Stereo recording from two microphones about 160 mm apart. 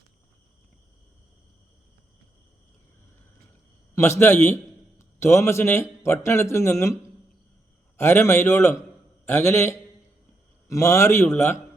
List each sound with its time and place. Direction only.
3.9 s a man's voice: 15° left (ahead or behind)